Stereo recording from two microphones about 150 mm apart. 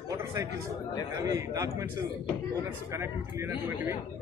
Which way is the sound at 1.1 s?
20° right (ahead or behind).